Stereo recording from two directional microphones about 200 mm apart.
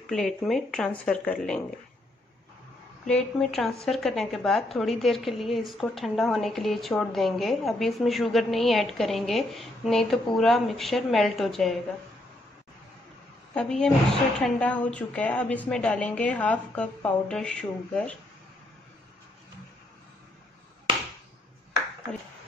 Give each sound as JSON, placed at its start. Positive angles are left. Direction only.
{"t": 0.0, "sound": "a woman's voice", "side_deg": 0}
{"t": 3.1, "sound": "a woman's voice", "side_deg": 5}
{"t": 13.6, "sound": "a woman's voice", "side_deg": 5}